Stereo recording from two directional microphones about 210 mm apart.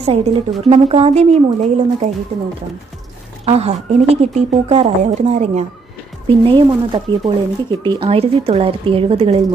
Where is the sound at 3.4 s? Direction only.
30° right (ahead or behind).